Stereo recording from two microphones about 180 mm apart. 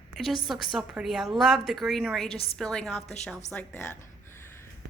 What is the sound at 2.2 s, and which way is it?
Speech, 35° left (ahead or behind).